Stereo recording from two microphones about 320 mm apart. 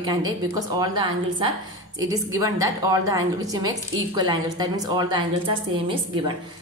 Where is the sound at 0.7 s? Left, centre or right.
Centre.